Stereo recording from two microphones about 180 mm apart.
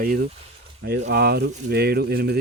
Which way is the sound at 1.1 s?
65° right (ahead or behind).